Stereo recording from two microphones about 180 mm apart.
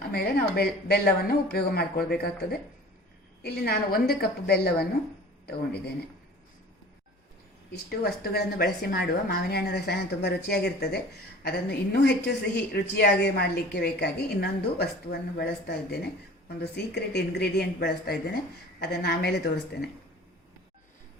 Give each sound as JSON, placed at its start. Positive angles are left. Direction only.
{"t": 0.1, "sound": "a woman's voice", "side_deg": 60}
{"t": 7.7, "sound": "a woman's voice", "side_deg": 60}